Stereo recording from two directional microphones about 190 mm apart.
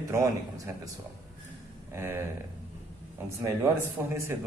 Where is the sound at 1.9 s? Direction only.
15° right (ahead or behind).